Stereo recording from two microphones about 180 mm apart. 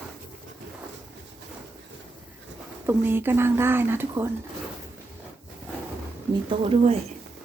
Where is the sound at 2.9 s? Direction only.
10° right (ahead or behind).